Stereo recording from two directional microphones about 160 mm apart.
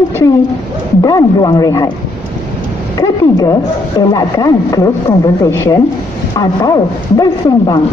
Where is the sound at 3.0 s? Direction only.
20° left (ahead or behind).